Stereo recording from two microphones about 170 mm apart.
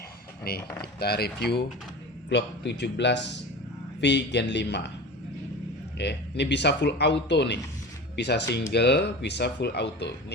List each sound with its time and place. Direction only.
0.8 s speech: 70° left (ahead or behind)
2.3 s speech: 90° left
6.0 s speech: 90° left